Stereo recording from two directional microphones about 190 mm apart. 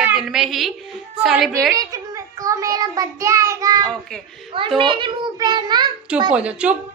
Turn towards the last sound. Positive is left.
turn(degrees=-5)  # may be behind; listen again after turning